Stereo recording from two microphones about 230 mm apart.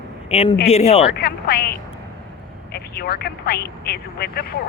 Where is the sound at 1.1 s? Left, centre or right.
Left.